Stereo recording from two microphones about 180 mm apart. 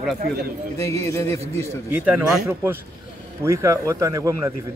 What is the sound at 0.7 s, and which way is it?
Speech, 15° left (ahead or behind).